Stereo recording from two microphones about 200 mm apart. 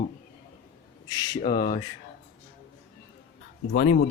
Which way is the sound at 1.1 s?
20° left (ahead or behind).